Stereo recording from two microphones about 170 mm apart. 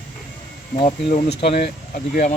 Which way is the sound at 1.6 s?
55° left (ahead or behind).